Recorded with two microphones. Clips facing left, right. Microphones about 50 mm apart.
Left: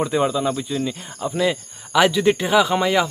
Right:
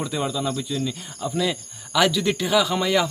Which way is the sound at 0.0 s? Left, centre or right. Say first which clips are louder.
Left 6 dB; left.